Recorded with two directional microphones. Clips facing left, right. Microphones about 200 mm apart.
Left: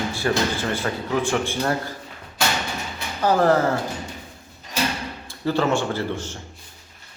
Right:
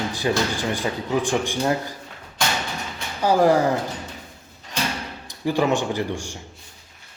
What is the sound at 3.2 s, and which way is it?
Speech, 10° right (ahead or behind).